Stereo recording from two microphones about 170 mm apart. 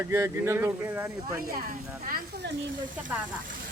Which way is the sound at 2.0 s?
65° right (ahead or behind).